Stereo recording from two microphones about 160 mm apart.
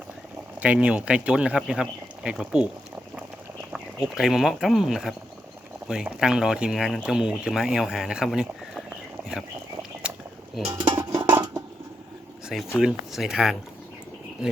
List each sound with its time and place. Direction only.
0.6 s speech: 10° right (ahead or behind)
3.7 s speech: centre (ahead or behind)
10.8 s a sound: 25° right (ahead or behind)
12.8 s speech: 5° right (ahead or behind)